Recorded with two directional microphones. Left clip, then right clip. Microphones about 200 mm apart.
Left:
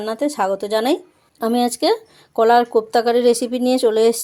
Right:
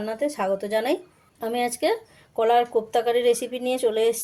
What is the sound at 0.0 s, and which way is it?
Speech, 40° left (ahead or behind).